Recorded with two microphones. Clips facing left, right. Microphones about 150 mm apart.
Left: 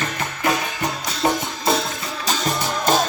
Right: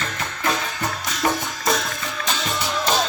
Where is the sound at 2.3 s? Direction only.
45° left (ahead or behind).